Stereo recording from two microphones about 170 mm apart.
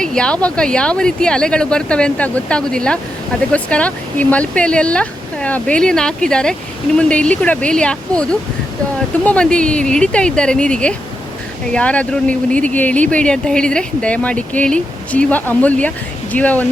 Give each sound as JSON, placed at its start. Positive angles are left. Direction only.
{"t": 0.0, "sound": "speech", "side_deg": 5}